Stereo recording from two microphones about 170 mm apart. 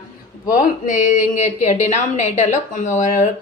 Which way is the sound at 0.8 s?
45° left (ahead or behind).